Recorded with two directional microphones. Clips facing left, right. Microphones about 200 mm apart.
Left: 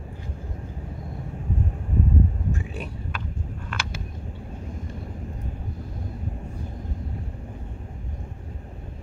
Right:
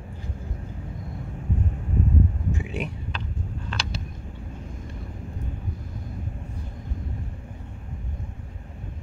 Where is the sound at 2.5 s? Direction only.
20° right (ahead or behind).